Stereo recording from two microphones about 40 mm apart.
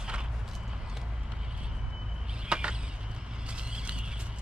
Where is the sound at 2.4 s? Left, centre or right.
Right.